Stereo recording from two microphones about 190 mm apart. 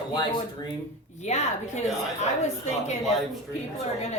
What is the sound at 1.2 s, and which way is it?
A woman's voice, 35° left (ahead or behind).